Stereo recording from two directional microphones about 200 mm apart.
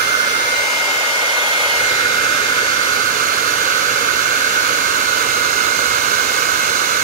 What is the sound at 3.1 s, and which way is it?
Hair dryer, 45° right (ahead or behind).